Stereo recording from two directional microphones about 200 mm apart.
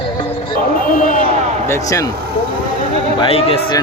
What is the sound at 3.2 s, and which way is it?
Speech, 30° left (ahead or behind).